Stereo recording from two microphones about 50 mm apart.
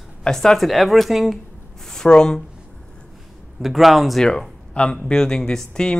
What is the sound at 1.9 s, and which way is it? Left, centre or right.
Speech, centre.